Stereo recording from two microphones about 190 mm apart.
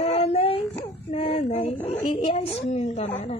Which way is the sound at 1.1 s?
30° left (ahead or behind).